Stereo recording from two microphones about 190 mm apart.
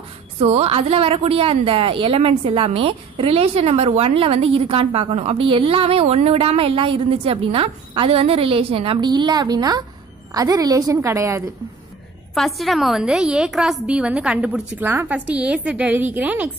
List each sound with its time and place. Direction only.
0.4 s a woman's voice: 35° right (ahead or behind); by 11.4 s 15° right (ahead or behind)
12.4 s a woman's voice: centre (ahead or behind)